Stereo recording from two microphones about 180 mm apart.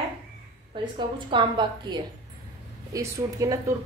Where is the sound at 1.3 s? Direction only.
25° right (ahead or behind).